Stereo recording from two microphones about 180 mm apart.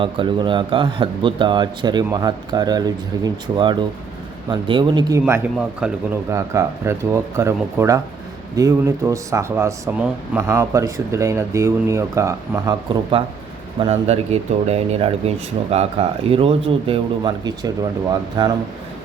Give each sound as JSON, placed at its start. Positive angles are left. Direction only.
{"t": 0.0, "sound": "speech", "side_deg": -25}
{"t": 5.2, "sound": "speech", "side_deg": -5}